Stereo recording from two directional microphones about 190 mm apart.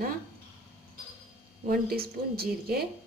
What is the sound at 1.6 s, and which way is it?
A woman's voice, 55° right (ahead or behind).